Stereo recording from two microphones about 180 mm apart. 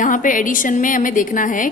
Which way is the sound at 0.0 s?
45° left (ahead or behind).